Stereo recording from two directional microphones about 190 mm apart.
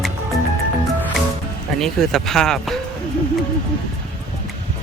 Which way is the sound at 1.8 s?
Centre (ahead or behind).